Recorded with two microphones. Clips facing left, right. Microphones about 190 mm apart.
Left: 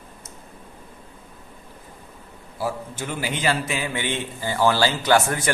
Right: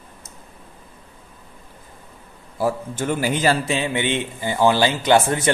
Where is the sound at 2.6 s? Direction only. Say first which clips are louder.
Right 6 dB; 50° right (ahead or behind).